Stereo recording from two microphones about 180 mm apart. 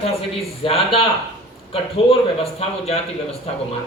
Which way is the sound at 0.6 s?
30° left (ahead or behind).